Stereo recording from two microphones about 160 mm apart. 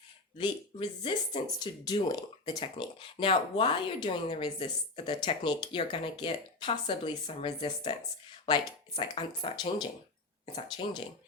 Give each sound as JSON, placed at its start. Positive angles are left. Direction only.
{"t": 0.3, "sound": "speech", "side_deg": 30}